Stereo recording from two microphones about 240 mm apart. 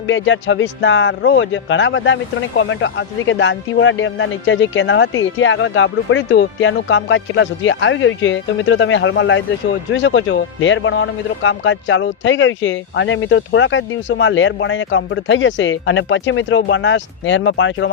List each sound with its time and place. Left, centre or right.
0.1 s speech: left